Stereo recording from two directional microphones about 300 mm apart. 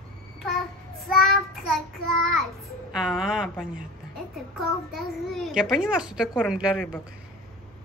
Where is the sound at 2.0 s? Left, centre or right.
Right.